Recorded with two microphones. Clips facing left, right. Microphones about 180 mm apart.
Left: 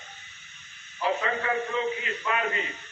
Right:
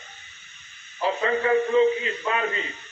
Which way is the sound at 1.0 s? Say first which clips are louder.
Right 2 dB; 30° right (ahead or behind).